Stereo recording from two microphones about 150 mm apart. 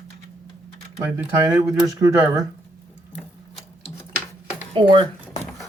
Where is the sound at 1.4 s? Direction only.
25° right (ahead or behind).